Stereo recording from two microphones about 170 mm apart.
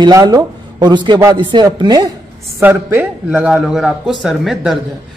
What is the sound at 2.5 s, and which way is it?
A man's voice, 10° right (ahead or behind).